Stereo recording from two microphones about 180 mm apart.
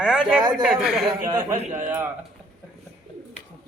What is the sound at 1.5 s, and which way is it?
Speech, 45° right (ahead or behind).